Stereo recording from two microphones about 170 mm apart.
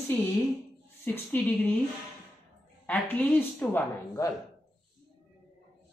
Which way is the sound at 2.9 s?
10° left (ahead or behind).